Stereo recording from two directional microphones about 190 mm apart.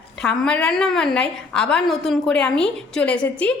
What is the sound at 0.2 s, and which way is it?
A woman's voice, 5° left (ahead or behind).